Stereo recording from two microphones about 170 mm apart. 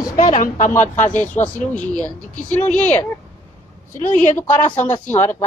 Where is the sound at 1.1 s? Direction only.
10° left (ahead or behind).